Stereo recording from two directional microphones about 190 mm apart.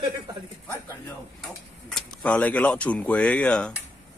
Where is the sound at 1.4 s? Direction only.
5° left (ahead or behind).